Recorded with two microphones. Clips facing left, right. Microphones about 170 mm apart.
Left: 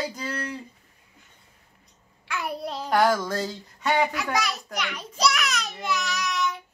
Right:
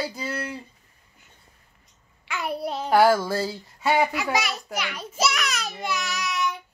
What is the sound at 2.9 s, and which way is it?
A child's voice, 5° right (ahead or behind).